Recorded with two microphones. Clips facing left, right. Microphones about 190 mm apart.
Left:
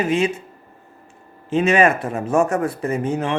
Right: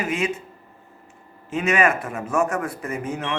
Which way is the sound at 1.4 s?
30° left (ahead or behind).